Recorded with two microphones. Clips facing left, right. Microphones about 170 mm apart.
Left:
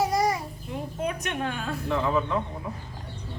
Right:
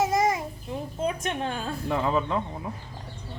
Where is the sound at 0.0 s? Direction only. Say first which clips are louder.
Right 1 dB; 20° right (ahead or behind).